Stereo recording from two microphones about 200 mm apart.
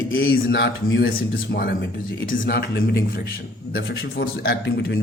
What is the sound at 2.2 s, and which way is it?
A man's voice, 45° left (ahead or behind).